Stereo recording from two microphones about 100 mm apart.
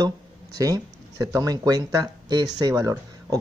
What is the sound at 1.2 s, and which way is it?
Speech, 40° right (ahead or behind).